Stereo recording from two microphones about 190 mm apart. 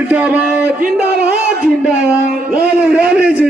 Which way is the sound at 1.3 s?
5° right (ahead or behind).